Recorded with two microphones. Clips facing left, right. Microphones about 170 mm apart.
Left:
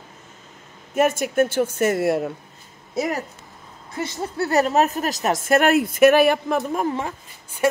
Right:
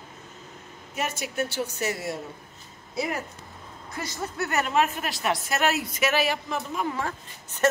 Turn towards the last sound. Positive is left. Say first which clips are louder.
# left 3 dB
turn(degrees=15)  # may be behind; listen again after turning